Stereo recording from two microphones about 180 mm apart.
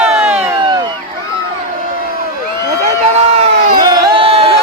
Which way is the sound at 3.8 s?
20° right (ahead or behind).